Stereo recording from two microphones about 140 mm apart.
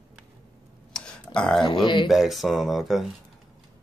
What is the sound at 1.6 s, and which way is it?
Speech, 35° left (ahead or behind).